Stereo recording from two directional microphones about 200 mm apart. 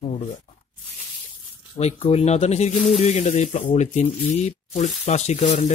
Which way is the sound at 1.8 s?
30° left (ahead or behind).